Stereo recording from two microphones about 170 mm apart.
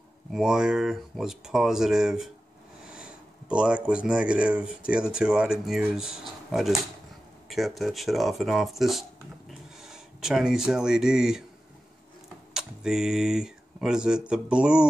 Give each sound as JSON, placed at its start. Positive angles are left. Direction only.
{"t": 0.3, "sound": "speech", "side_deg": -5}
{"t": 12.5, "sound": "speech", "side_deg": -5}